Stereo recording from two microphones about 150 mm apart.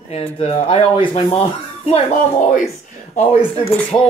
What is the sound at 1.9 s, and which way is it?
Speech, 55° left (ahead or behind).